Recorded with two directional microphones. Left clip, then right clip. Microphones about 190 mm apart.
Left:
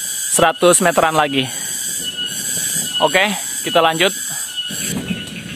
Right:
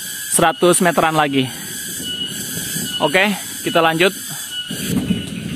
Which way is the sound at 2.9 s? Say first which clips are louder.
Left 1 dB; 10° left (ahead or behind).